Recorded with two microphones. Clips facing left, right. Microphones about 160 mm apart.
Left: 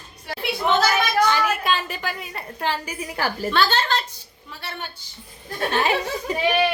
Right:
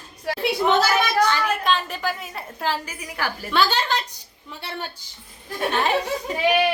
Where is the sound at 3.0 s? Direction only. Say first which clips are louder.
Left 4 dB; 30° left (ahead or behind).